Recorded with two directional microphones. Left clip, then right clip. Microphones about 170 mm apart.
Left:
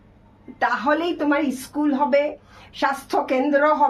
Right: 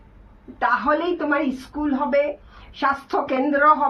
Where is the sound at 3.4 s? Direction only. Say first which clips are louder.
Left 1 dB; 25° left (ahead or behind).